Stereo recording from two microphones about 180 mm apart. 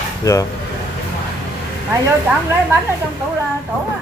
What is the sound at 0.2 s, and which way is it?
Speech, 20° left (ahead or behind).